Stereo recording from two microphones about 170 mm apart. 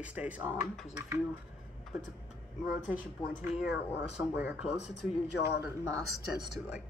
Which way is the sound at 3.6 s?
5° right (ahead or behind).